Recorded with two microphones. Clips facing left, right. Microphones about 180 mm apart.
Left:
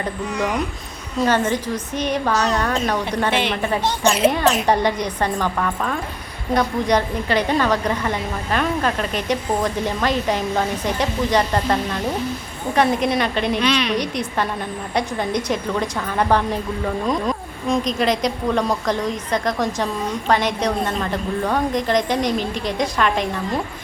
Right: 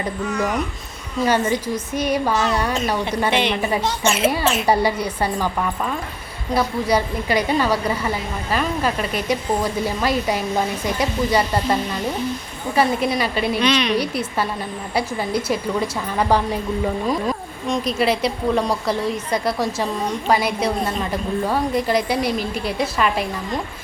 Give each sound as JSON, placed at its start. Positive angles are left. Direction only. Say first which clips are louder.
{"t": 0.3, "sound": "speech", "louder": "right 1 dB", "side_deg": 15}
{"t": 1.2, "sound": "a woman's voice", "louder": "even", "side_deg": -10}
{"t": 3.3, "sound": "a woman's voice", "louder": "right 1 dB", "side_deg": 5}
{"t": 3.6, "sound": "a woman's voice", "louder": "even", "side_deg": -10}
{"t": 4.0, "sound": "speech", "louder": "left 4 dB", "side_deg": 35}
{"t": 4.6, "sound": "a woman's voice", "louder": "even", "side_deg": -10}